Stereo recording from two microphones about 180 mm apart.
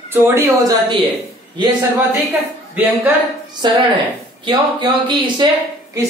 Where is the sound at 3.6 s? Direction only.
25° right (ahead or behind).